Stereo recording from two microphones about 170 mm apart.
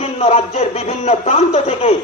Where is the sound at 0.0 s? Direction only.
35° left (ahead or behind).